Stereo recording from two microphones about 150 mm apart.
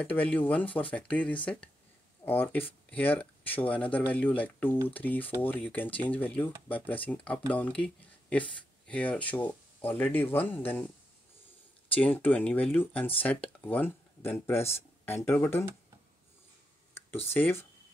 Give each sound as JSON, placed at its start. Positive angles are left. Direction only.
{"t": 0.0, "sound": "speech", "side_deg": 10}
{"t": 11.9, "sound": "speech", "side_deg": 10}
{"t": 17.3, "sound": "speech", "side_deg": 15}